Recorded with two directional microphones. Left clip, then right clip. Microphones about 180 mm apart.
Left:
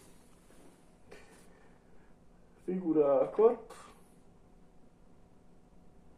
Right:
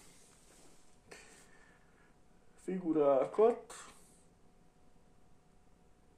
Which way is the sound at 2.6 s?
45° right (ahead or behind).